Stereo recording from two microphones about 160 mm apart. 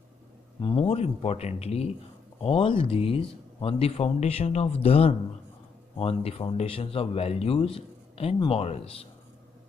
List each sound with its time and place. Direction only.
0.6 s speech: 35° left (ahead or behind)